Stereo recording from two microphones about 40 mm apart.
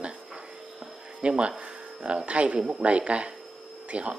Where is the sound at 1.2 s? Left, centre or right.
Right.